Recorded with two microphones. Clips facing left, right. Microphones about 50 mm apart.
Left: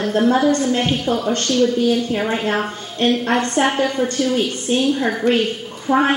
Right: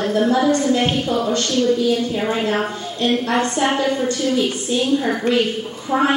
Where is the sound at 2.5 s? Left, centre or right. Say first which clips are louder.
Even; left.